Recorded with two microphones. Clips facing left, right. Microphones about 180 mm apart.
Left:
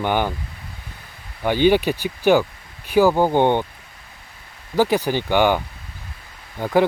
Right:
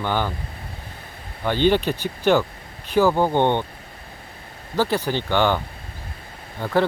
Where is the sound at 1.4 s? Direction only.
10° left (ahead or behind).